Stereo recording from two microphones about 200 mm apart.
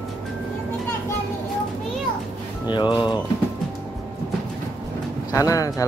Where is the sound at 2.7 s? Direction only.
20° left (ahead or behind).